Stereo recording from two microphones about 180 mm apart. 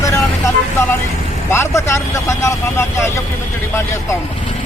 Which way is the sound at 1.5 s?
15° left (ahead or behind).